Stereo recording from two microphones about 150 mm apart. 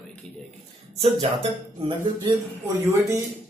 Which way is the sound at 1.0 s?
35° right (ahead or behind).